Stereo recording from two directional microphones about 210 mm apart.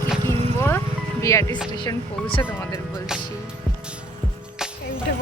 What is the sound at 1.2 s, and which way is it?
Speech, 15° left (ahead or behind).